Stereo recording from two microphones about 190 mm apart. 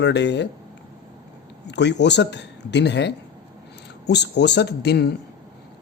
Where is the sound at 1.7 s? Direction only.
65° left (ahead or behind).